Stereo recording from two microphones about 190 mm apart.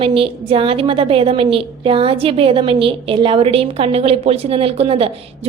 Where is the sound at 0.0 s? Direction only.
30° right (ahead or behind).